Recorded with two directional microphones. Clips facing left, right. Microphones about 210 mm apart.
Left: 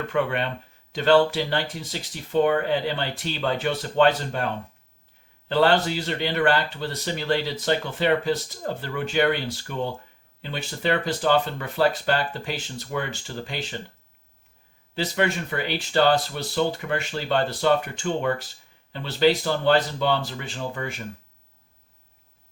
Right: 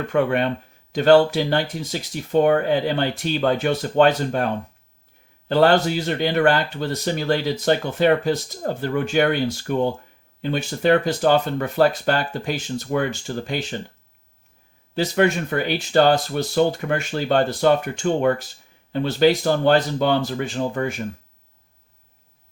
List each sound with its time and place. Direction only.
0.1 s speech: 45° right (ahead or behind)
5.5 s speech: 45° right (ahead or behind)
14.9 s speech: 50° right (ahead or behind)